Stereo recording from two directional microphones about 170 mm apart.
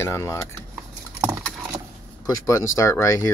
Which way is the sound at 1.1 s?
15° right (ahead or behind).